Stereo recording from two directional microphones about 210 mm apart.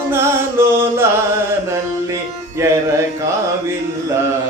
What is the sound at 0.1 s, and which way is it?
Music, 10° right (ahead or behind).